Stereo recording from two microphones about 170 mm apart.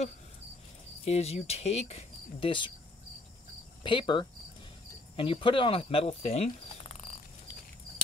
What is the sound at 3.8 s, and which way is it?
Speech, 30° left (ahead or behind).